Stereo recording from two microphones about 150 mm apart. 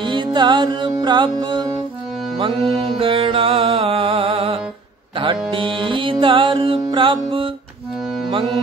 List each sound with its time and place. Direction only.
0.0 s music: 30° right (ahead or behind)
5.1 s a sound: 35° right (ahead or behind)
5.5 s music: 35° right (ahead or behind)